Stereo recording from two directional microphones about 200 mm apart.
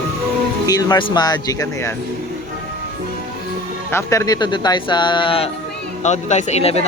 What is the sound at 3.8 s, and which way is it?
Speech, 15° left (ahead or behind).